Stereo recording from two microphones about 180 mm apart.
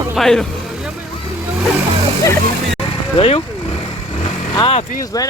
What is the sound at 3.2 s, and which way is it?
Speech, 30° left (ahead or behind).